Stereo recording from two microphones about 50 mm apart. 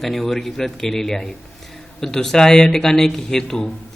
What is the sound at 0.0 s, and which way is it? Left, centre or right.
A man's voice, centre.